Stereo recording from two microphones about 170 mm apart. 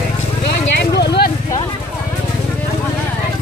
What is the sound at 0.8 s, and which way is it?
Vehicle, 75° left (ahead or behind).